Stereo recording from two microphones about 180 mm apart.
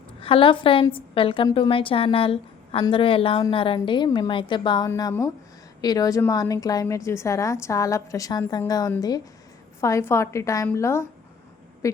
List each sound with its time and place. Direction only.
0.2 s a woman's voice: 30° left (ahead or behind); by 11.0 s 15° left (ahead or behind)